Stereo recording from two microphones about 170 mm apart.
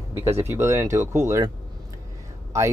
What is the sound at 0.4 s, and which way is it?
Speech, 15° right (ahead or behind).